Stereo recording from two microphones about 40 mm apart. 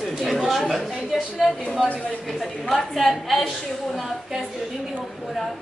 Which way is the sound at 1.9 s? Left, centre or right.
Left.